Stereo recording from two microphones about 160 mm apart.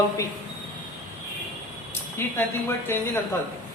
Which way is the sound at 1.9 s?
15° left (ahead or behind).